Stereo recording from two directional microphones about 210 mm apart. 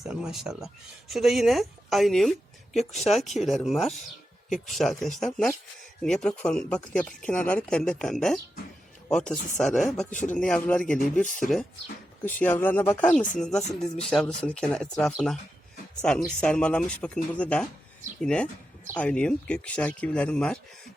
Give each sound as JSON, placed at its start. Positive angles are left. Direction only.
{"t": 0.0, "sound": "speech", "side_deg": -5}
{"t": 10.1, "sound": "speech", "side_deg": 35}
{"t": 10.3, "sound": "speech", "side_deg": 5}
{"t": 11.2, "sound": "speech", "side_deg": 40}
{"t": 12.2, "sound": "speech", "side_deg": 10}